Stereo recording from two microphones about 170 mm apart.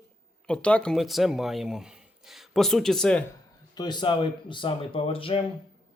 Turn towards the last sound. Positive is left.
turn(degrees=30)  # may be behind; listen again after turning